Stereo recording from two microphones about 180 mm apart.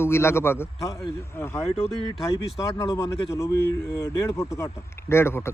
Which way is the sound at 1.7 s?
30° left (ahead or behind).